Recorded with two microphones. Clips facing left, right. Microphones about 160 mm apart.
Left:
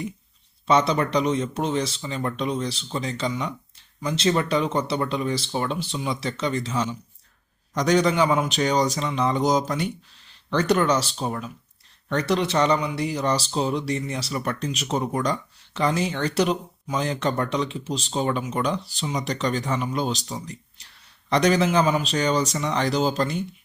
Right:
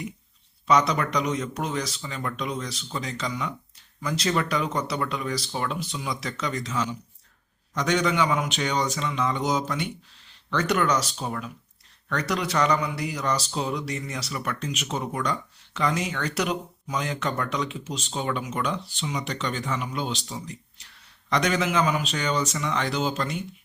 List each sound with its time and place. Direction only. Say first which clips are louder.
0.7 s speech: left 2 dB; 30° left (ahead or behind)
21.2 s speech: left 5 dB; 35° left (ahead or behind)